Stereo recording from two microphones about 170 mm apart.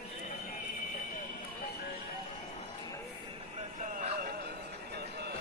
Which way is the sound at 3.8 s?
50° right (ahead or behind).